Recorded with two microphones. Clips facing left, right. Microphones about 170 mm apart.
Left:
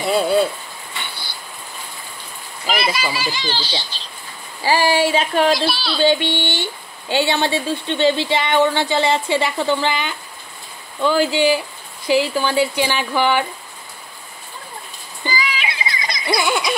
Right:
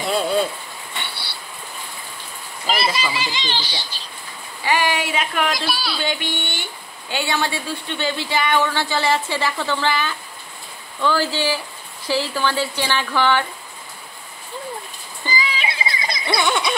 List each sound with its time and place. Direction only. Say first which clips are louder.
0.0 s speech: left 3 dB; 5° left (ahead or behind)
2.7 s a child's voice: left 1 dB; 25° right (ahead or behind)
4.6 s a sound: left 5 dB; 30° left (ahead or behind)
5.7 s speech: left 2 dB; 5° right (ahead or behind)
5.9 s speech: left 8 dB; 25° left (ahead or behind)
15.2 s music: left 1 dB; 25° right (ahead or behind)
16.3 s a sound: even; 5° left (ahead or behind)